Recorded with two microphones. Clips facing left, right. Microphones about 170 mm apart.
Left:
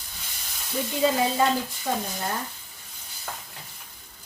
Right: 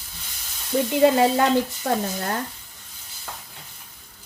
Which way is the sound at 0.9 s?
70° right (ahead or behind).